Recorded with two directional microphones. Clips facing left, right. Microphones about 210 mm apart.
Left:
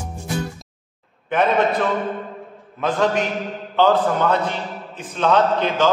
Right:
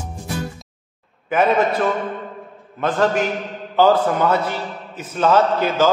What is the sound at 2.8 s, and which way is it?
A man's voice, centre (ahead or behind).